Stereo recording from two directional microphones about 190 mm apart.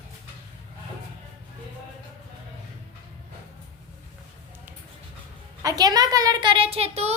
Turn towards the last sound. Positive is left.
turn(degrees=-35)  # may be behind; listen again after turning